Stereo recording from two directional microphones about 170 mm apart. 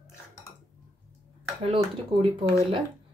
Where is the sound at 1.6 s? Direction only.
35° right (ahead or behind).